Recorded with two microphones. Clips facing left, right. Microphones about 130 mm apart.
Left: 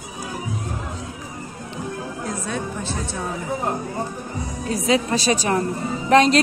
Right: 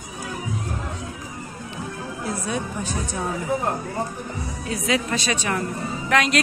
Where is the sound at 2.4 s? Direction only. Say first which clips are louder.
Even; 15° right (ahead or behind).